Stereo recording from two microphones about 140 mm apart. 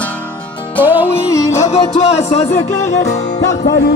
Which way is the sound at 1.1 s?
20° left (ahead or behind).